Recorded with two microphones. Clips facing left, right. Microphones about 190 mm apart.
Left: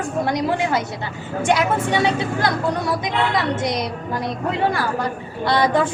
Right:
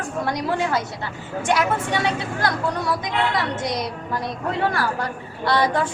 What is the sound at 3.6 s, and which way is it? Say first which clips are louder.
Speech: left 3 dB; 20° left (ahead or behind).